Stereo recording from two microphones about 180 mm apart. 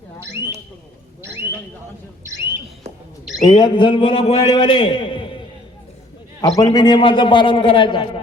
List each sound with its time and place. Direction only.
0.2 s speech: 15° right (ahead or behind)
2.2 s a sound: 15° right (ahead or behind)
3.4 s a man's voice: 25° left (ahead or behind)
6.6 s a man's voice: 25° left (ahead or behind)